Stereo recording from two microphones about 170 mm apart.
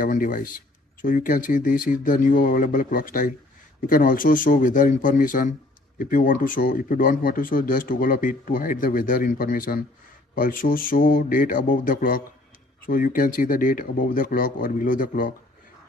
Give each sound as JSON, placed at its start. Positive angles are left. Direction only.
{"t": 0.0, "sound": "speech", "side_deg": 55}